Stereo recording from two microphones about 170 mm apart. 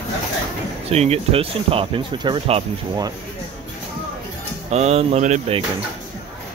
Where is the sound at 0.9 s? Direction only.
35° right (ahead or behind).